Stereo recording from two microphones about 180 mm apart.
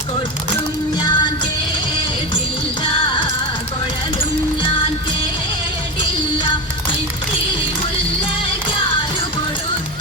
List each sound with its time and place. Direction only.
0.9 s music: 25° left (ahead or behind)
2.8 s music: 25° left (ahead or behind)